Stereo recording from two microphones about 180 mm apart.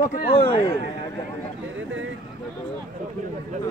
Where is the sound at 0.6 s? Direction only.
15° left (ahead or behind).